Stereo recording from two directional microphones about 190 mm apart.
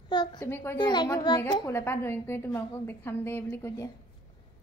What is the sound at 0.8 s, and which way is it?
A child's voice, 25° left (ahead or behind).